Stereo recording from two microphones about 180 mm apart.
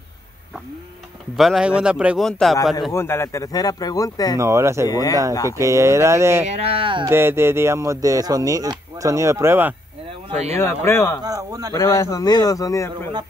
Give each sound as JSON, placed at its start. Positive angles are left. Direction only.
{"t": 1.3, "sound": "speech", "side_deg": 0}
{"t": 2.9, "sound": "speech", "side_deg": 15}
{"t": 4.4, "sound": "speech", "side_deg": -15}
{"t": 4.8, "sound": "speech", "side_deg": 20}
{"t": 5.6, "sound": "speech", "side_deg": -15}
{"t": 6.4, "sound": "speech", "side_deg": -35}
{"t": 7.1, "sound": "speech", "side_deg": -15}
{"t": 10.3, "sound": "speech", "side_deg": -35}
{"t": 10.9, "sound": "speech", "side_deg": 15}
{"t": 11.2, "sound": "speech", "side_deg": -20}
{"t": 11.7, "sound": "speech", "side_deg": 15}